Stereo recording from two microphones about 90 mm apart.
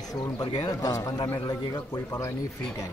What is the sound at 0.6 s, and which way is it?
A man's voice, 45° left (ahead or behind).